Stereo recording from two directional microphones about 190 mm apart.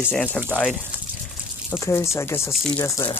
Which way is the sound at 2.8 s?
15° left (ahead or behind).